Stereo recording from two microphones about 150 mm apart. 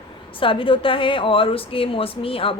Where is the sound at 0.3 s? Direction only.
35° left (ahead or behind).